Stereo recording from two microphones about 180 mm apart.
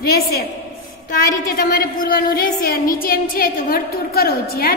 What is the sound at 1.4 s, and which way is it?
A woman's voice, 55° left (ahead or behind).